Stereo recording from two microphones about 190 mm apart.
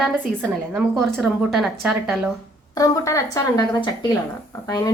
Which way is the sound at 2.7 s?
15° left (ahead or behind).